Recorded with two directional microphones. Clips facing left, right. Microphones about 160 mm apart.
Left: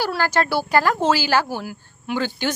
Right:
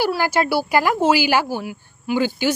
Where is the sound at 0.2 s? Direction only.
10° right (ahead or behind).